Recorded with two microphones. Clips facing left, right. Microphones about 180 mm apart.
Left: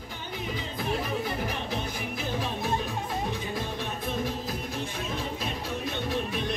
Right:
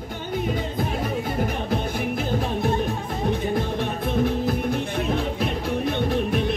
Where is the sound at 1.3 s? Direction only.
55° right (ahead or behind).